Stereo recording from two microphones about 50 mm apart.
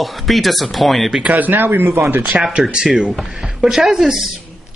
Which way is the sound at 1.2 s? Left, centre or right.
Right.